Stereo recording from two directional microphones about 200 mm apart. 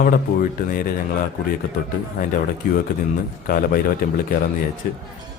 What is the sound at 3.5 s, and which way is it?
Speech, 45° left (ahead or behind).